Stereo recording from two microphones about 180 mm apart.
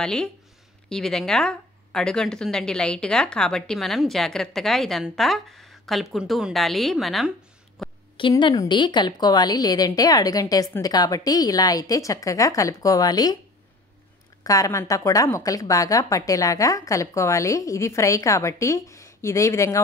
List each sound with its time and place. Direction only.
0.0 s speech: 5° left (ahead or behind)
7.8 s a sound: centre (ahead or behind)
8.2 s a woman's voice: 25° left (ahead or behind)
14.4 s a woman's voice: 20° left (ahead or behind)